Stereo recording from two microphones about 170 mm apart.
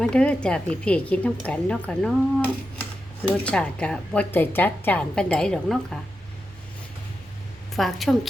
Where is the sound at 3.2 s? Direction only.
5° left (ahead or behind).